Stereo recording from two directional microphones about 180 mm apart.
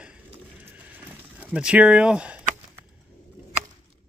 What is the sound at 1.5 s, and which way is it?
Speech, 5° right (ahead or behind).